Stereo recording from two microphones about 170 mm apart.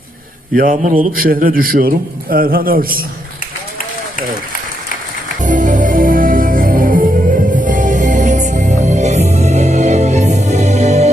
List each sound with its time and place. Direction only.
0.5 s a man's voice: 55° right (ahead or behind)
5.4 s music: 50° right (ahead or behind)